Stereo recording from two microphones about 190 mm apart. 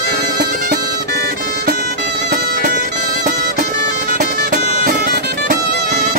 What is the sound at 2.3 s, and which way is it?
Music, 50° right (ahead or behind).